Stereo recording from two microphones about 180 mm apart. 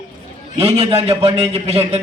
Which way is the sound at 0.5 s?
35° right (ahead or behind).